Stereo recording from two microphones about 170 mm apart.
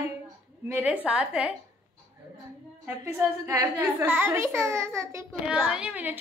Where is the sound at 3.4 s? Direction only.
20° right (ahead or behind).